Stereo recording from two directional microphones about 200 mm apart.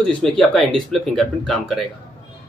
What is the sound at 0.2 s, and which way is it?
Speech, centre (ahead or behind).